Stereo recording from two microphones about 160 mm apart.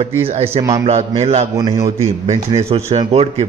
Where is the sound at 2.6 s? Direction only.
40° right (ahead or behind).